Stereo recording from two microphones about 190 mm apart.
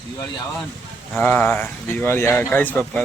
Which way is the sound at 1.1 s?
10° left (ahead or behind).